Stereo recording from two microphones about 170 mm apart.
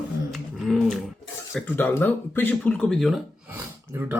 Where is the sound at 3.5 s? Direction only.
15° right (ahead or behind).